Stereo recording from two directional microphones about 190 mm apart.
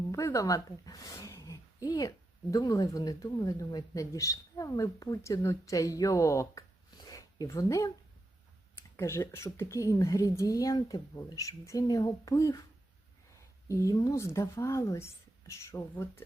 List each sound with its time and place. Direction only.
0.1 s speech: 15° left (ahead or behind)
9.0 s a woman's voice: 15° left (ahead or behind)
13.7 s a woman's voice: 15° left (ahead or behind)